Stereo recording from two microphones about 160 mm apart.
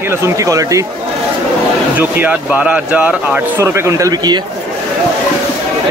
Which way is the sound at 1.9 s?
10° right (ahead or behind).